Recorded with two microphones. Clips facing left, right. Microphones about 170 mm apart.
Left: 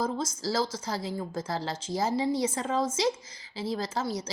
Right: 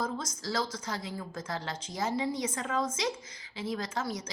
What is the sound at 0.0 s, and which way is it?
A woman's voice, 30° left (ahead or behind).